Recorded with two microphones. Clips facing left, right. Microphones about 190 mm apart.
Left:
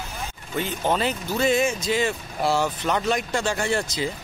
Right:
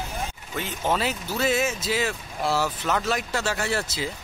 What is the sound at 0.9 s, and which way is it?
Speech, 5° right (ahead or behind).